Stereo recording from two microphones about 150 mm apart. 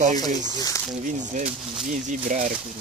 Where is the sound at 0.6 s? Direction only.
25° left (ahead or behind).